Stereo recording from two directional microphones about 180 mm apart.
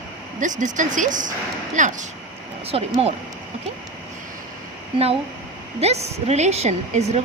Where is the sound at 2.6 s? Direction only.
35° right (ahead or behind).